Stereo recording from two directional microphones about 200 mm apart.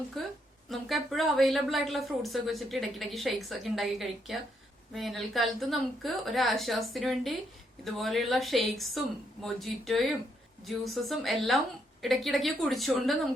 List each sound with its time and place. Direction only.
0.1 s a woman's voice: centre (ahead or behind)